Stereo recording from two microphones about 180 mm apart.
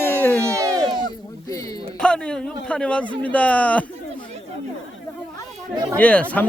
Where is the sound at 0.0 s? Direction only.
10° left (ahead or behind).